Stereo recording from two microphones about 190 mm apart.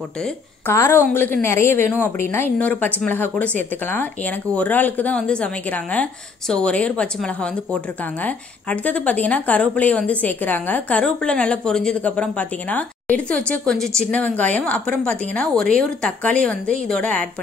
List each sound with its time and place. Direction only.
0.2 s a woman's voice: 15° left (ahead or behind)